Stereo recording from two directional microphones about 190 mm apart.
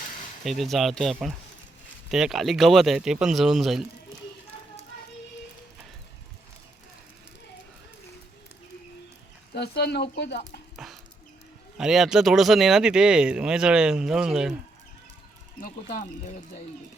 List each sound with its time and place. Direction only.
0.0 s a sound: 45° left (ahead or behind)
0.4 s speech: centre (ahead or behind)
9.6 s speech: 60° left (ahead or behind)
10.8 s dog: centre (ahead or behind)
11.8 s speech: centre (ahead or behind)
15.6 s speech: 50° left (ahead or behind)